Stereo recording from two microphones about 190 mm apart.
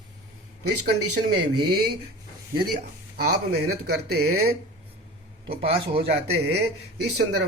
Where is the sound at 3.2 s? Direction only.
55° right (ahead or behind).